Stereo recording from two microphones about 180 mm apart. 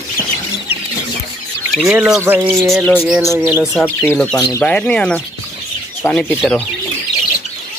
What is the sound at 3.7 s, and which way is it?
Speech, 5° left (ahead or behind).